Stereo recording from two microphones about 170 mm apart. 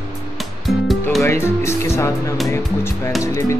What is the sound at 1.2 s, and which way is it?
Speech, 15° left (ahead or behind).